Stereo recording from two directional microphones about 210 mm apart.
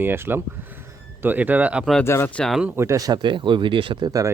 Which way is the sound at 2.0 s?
10° left (ahead or behind).